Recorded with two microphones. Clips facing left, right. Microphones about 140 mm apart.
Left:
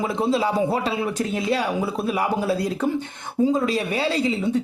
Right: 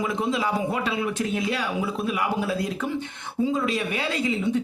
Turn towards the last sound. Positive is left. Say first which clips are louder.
# left 3 dB
turn(degrees=35)  # may be behind; listen again after turning